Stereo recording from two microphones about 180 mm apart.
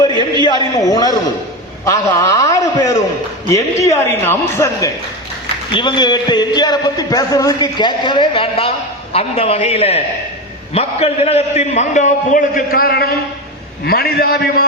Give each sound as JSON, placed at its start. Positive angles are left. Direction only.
{"t": 0.0, "sound": "a sound", "side_deg": 25}
{"t": 1.8, "sound": "a man's voice", "side_deg": 15}
{"t": 5.7, "sound": "a man's voice", "side_deg": 25}